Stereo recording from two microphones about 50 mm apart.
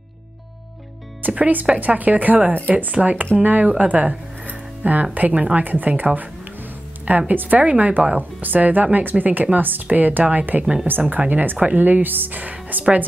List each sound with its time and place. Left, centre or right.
1.3 s speech: right
3.7 s music: right
5.1 s speech: right
10.6 s speech: centre
10.9 s speech: right